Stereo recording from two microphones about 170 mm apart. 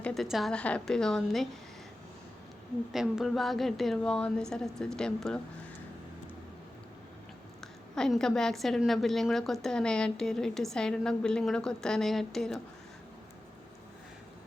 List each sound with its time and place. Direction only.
0.0 s a woman's voice: centre (ahead or behind)
2.9 s a woman's voice: centre (ahead or behind)
7.9 s a woman's voice: 5° left (ahead or behind)